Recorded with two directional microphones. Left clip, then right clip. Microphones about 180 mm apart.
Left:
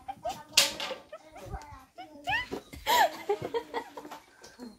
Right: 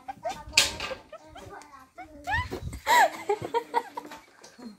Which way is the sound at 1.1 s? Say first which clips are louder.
Right 1 dB; 15° left (ahead or behind).